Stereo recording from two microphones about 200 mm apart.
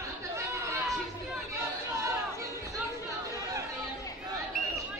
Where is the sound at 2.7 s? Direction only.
15° right (ahead or behind).